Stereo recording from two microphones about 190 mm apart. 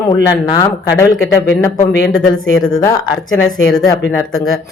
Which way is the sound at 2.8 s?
20° left (ahead or behind).